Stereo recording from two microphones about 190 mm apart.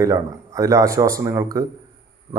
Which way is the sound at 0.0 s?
15° right (ahead or behind).